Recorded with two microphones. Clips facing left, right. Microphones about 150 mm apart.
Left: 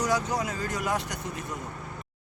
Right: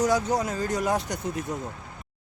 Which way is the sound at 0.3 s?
35° right (ahead or behind).